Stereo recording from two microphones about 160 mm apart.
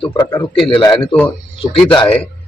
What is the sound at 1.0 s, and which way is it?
Speech, 10° left (ahead or behind).